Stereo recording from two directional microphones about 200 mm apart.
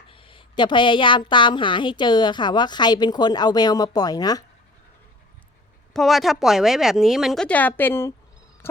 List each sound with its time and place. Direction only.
0.1 s a woman's voice: 25° left (ahead or behind)
5.9 s speech: centre (ahead or behind)